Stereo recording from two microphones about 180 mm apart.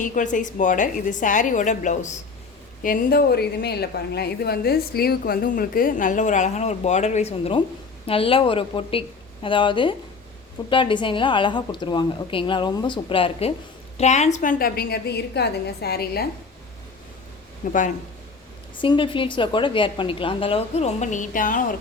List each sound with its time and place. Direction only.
0.0 s a woman's voice: 45° left (ahead or behind)
2.8 s a woman's voice: 55° left (ahead or behind)
17.7 s a woman's voice: 45° left (ahead or behind)
18.8 s a woman's voice: 30° left (ahead or behind); by 21.7 s 50° left (ahead or behind)